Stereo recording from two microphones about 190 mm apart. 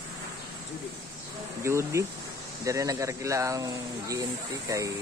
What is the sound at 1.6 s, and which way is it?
Speech, 15° right (ahead or behind).